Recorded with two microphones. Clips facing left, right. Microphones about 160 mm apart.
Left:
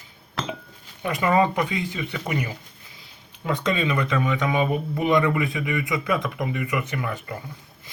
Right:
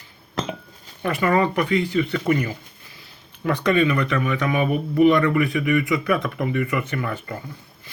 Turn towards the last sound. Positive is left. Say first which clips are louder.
# right 2 dB
turn(degrees=10)  # may be behind; listen again after turning